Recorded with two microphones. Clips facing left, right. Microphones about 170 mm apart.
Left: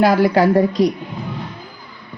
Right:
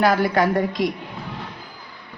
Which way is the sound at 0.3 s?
35° left (ahead or behind).